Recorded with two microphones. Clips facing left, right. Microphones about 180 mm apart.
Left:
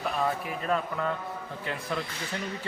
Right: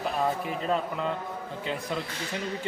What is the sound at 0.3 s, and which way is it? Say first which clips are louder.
Speech: right 1 dB; 20° right (ahead or behind).